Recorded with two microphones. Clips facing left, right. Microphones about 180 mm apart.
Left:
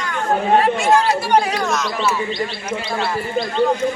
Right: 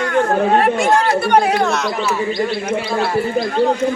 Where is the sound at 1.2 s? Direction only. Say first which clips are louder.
Right 3 dB; 55° right (ahead or behind).